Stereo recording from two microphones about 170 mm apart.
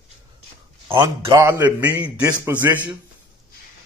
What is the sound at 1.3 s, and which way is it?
A man's voice, 15° right (ahead or behind).